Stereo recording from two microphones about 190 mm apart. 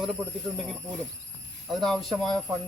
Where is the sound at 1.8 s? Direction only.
Centre (ahead or behind).